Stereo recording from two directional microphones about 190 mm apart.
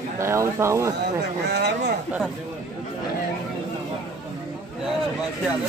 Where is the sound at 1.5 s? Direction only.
60° right (ahead or behind).